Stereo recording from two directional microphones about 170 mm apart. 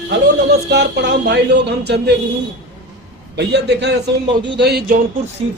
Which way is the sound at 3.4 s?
80° right.